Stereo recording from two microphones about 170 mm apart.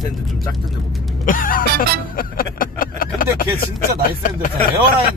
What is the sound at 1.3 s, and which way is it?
Music, 55° left (ahead or behind).